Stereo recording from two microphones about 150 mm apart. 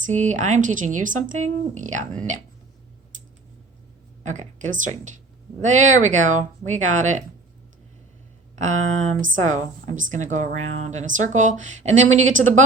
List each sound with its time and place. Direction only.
0.0 s speech: 55° right (ahead or behind)
4.2 s speech: 55° right (ahead or behind)
8.5 s speech: 50° right (ahead or behind)